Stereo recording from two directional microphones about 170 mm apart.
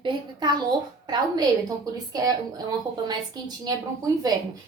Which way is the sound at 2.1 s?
20° right (ahead or behind).